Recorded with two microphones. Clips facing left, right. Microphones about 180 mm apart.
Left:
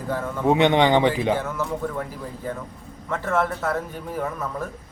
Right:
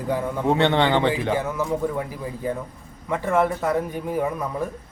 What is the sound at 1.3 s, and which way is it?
A man's voice, 10° right (ahead or behind).